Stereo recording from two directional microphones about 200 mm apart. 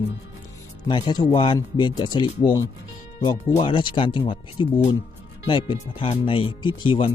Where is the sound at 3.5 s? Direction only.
25° left (ahead or behind).